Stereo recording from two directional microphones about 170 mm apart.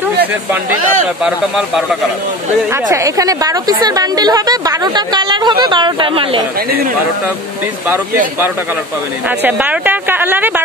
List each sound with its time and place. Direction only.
0.2 s a woman's voice: 10° right (ahead or behind)
2.7 s a woman's voice: 20° right (ahead or behind)
9.4 s a woman's voice: 10° right (ahead or behind)